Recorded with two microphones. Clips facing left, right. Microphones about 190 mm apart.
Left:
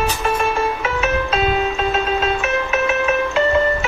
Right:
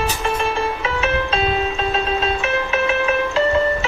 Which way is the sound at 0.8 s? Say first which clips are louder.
Left 1 dB; 30° right (ahead or behind).